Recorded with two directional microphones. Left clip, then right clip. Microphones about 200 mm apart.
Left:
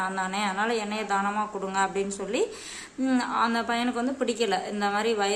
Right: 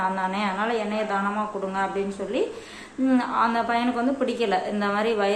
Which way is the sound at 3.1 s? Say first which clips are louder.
Right 3 dB; 25° left (ahead or behind).